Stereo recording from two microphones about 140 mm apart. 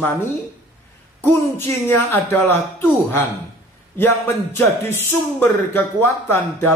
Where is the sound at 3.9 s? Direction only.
15° left (ahead or behind).